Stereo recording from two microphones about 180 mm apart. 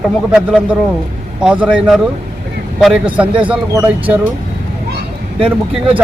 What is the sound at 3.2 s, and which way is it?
Speech, 30° right (ahead or behind).